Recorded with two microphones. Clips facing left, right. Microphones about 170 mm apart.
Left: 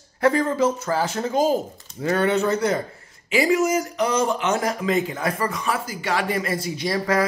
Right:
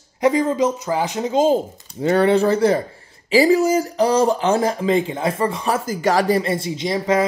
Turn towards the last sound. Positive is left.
turn(degrees=-20)  # may be behind; listen again after turning